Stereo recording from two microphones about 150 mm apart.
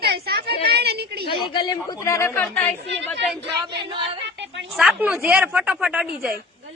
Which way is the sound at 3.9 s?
35° right (ahead or behind).